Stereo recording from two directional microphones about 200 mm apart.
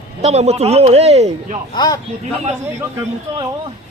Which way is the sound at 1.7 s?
20° left (ahead or behind).